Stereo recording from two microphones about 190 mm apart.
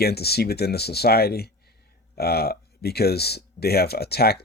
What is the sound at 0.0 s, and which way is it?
Speech, 55° left (ahead or behind).